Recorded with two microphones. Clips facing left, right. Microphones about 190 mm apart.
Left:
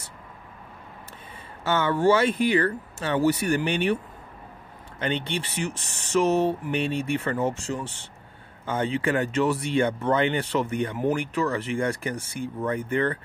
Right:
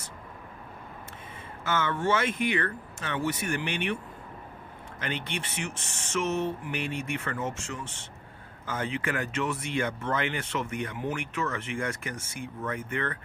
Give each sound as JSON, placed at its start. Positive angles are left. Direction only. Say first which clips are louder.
{"t": 1.6, "sound": "speech", "louder": "left 6 dB", "side_deg": 35}